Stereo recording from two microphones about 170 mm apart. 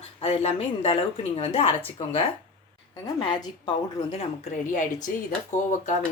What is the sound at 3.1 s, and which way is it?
Speech, 25° left (ahead or behind).